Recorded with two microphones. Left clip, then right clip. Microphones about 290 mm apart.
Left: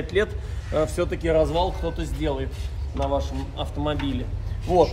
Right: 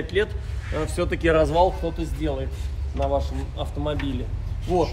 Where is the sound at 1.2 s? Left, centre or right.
Right.